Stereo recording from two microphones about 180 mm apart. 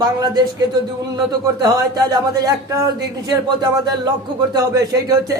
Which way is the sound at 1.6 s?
20° right (ahead or behind).